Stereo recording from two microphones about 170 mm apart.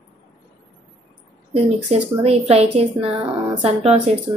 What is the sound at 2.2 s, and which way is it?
Speech, 35° right (ahead or behind).